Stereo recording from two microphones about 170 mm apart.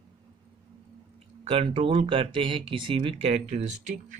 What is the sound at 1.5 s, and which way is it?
Speech, 35° right (ahead or behind).